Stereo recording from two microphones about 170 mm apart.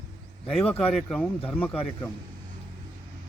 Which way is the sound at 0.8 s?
5° left (ahead or behind).